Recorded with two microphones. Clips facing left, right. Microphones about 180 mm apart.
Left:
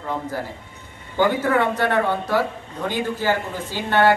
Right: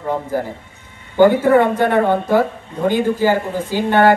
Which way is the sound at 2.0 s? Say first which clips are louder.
Right 6 dB; 50° right (ahead or behind).